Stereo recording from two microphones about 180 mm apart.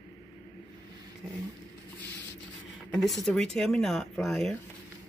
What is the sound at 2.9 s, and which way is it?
Speech, centre (ahead or behind).